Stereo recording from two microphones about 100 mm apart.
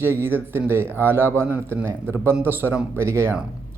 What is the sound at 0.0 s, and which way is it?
Speech, 20° right (ahead or behind).